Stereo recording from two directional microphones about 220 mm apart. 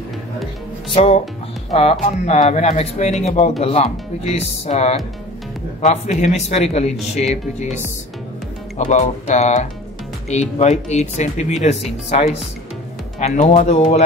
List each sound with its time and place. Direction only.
0.9 s speech: 25° left (ahead or behind)